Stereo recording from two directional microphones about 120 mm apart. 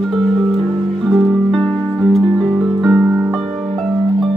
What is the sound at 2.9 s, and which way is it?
Music, 15° right (ahead or behind).